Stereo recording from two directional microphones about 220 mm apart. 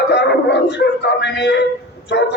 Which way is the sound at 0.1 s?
50° left (ahead or behind).